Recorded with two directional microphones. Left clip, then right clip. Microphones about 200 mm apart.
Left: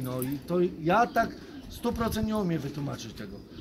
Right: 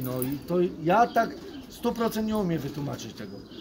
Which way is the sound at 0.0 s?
15° right (ahead or behind).